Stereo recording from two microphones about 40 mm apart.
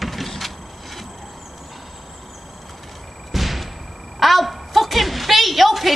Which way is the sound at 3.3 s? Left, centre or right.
Centre.